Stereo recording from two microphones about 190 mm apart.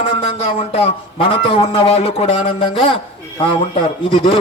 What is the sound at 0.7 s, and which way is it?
A man's voice, 30° left (ahead or behind).